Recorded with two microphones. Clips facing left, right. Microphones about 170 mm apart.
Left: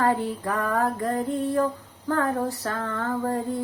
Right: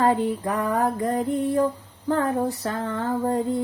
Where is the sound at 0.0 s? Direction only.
20° right (ahead or behind).